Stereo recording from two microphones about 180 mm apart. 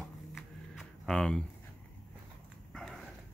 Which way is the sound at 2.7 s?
Centre (ahead or behind).